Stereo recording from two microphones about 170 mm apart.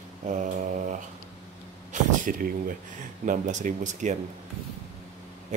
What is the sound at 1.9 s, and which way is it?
Speech, 50° right (ahead or behind).